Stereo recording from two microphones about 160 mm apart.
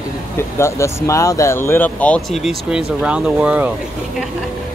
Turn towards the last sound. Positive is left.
turn(degrees=-10)  # may be behind; listen again after turning